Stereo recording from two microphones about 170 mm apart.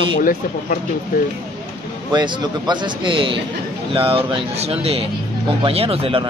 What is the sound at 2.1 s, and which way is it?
A man's voice, 25° right (ahead or behind).